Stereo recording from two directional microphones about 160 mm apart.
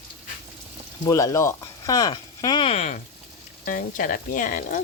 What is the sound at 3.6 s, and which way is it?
Speech, 60° left (ahead or behind).